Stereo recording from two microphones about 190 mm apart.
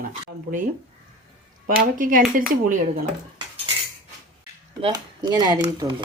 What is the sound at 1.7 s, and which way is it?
Speech, 45° right (ahead or behind).